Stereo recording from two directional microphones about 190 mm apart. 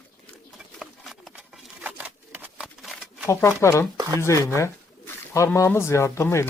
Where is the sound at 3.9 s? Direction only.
20° right (ahead or behind).